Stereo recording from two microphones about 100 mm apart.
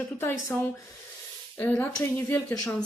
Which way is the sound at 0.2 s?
20° left (ahead or behind).